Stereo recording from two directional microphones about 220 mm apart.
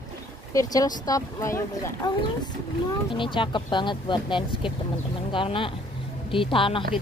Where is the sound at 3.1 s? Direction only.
20° left (ahead or behind).